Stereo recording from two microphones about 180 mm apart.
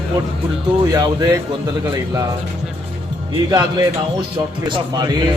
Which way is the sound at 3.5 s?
20° right (ahead or behind).